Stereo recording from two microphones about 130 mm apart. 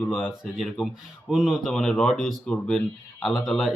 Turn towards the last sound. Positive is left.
turn(degrees=0)  # may be behind; listen again after turning